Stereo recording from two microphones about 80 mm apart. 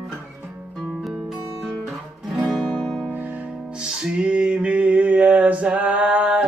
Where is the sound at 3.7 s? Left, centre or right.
Centre.